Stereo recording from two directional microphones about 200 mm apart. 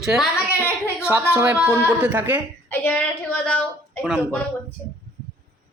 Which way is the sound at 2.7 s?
10° left (ahead or behind).